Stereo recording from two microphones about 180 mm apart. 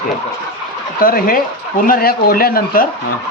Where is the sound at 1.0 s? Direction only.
55° left (ahead or behind).